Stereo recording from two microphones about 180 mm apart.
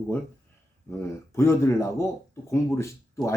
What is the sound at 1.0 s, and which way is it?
Speech, 15° left (ahead or behind).